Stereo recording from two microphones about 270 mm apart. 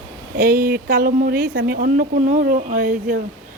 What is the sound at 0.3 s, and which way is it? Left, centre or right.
Speech, right.